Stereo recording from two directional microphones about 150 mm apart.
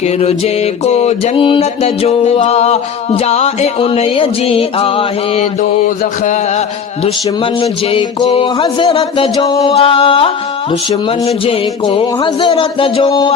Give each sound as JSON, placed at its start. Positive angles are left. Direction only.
{"t": 0.2, "sound": "mantra", "side_deg": 45}
{"t": 7.6, "sound": "music", "side_deg": 40}